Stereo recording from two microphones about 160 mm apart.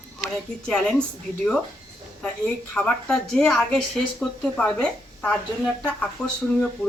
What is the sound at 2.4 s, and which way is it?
Speech, 5° left (ahead or behind).